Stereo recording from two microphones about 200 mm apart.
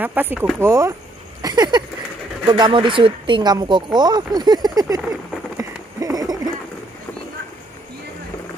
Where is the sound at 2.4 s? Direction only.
20° right (ahead or behind).